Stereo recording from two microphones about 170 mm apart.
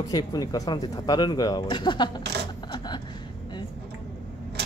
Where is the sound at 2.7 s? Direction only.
25° left (ahead or behind).